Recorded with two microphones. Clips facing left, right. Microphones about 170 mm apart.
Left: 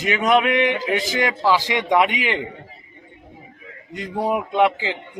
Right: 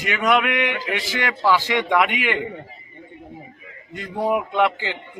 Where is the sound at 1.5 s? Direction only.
15° left (ahead or behind).